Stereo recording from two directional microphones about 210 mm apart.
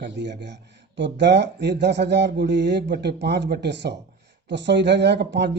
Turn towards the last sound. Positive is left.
turn(degrees=-55)  # may be behind; listen again after turning